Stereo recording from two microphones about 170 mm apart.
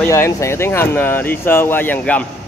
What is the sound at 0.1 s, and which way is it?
Speech, 15° left (ahead or behind).